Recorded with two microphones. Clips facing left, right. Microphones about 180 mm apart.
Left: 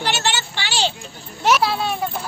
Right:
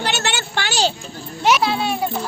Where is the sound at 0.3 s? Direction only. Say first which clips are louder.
Right 1 dB; 50° right (ahead or behind).